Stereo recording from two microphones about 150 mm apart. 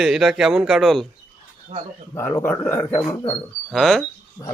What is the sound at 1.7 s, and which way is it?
Speech, 45° right (ahead or behind).